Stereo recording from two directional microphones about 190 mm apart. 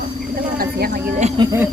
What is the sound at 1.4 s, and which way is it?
Speech, 15° right (ahead or behind).